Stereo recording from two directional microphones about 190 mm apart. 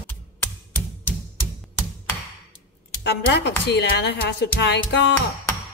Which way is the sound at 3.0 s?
60° left (ahead or behind).